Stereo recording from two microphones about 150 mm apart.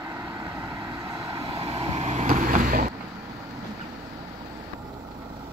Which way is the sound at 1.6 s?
40° right (ahead or behind).